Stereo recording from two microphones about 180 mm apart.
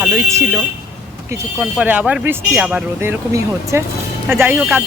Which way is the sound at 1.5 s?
5° right (ahead or behind).